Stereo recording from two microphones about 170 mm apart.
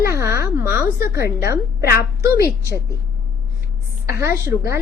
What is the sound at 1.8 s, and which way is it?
Speech, 65° left (ahead or behind).